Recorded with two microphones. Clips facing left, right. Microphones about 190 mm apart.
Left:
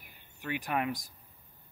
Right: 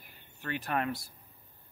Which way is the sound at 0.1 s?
15° left (ahead or behind).